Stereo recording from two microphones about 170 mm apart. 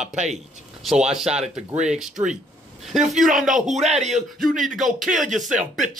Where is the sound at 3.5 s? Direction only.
45° right (ahead or behind).